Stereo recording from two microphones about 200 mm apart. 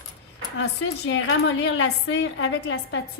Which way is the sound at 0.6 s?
70° left (ahead or behind).